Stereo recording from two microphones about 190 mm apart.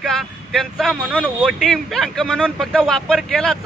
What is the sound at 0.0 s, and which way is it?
Speech, centre (ahead or behind).